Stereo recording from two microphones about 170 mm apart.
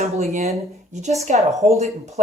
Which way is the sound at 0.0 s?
40° right (ahead or behind).